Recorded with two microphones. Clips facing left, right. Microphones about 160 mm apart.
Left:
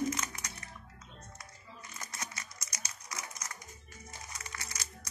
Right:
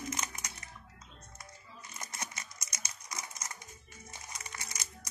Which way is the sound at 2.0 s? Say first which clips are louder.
Right 1 dB; 20° right (ahead or behind).